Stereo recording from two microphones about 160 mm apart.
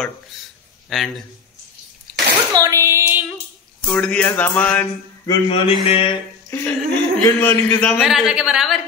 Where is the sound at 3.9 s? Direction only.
5° left (ahead or behind).